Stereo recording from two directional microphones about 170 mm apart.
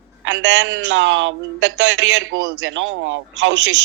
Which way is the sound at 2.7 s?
90° right.